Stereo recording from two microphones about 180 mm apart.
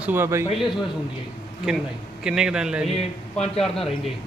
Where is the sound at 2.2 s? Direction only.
5° right (ahead or behind).